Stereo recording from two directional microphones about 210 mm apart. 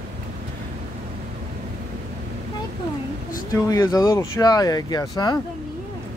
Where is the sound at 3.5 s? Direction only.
15° left (ahead or behind).